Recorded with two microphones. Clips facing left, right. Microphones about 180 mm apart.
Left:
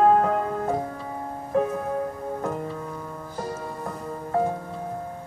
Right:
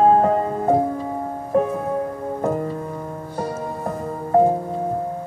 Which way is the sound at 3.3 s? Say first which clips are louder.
Right 5 dB; 65° right (ahead or behind).